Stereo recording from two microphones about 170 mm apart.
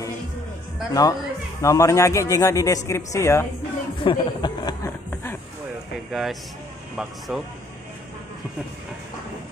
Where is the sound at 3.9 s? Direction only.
25° left (ahead or behind).